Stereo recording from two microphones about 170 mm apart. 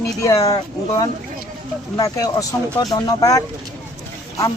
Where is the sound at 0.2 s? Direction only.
20° left (ahead or behind).